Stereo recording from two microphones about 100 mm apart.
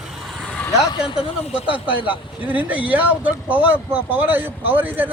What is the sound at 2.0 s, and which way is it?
A man's voice, 15° right (ahead or behind).